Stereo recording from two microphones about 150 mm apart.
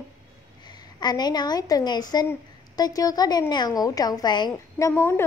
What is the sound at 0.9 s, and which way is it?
A woman's voice, 30° left (ahead or behind).